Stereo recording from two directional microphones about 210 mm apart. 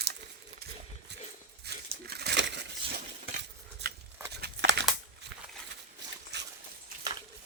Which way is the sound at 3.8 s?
55° right (ahead or behind).